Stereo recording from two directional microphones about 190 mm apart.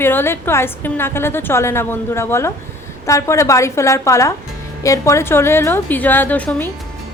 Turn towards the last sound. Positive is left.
turn(degrees=10)  # may be behind; listen again after turning